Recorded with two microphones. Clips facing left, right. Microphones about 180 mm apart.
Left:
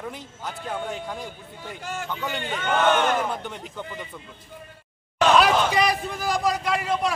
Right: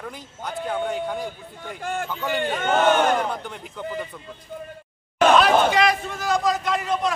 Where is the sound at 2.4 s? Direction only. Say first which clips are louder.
Right 2 dB; 50° right (ahead or behind).